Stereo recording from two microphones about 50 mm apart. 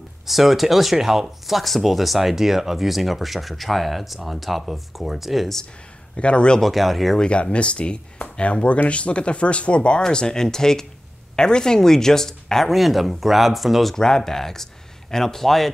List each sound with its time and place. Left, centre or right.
0.3 s speech: centre
6.1 s speech: left
6.6 s speech: centre
7.2 s speech: left
8.2 s a sound: left
8.8 s speech: left; by 13.9 s centre
13.9 s speech: centre